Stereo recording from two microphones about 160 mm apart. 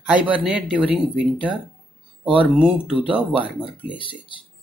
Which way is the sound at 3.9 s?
30° left (ahead or behind).